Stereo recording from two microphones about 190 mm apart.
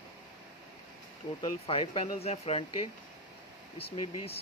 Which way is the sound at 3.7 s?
30° left (ahead or behind).